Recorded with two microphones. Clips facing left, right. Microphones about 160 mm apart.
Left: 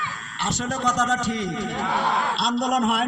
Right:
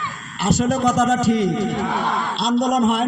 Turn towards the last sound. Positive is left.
turn(degrees=5)  # may be behind; listen again after turning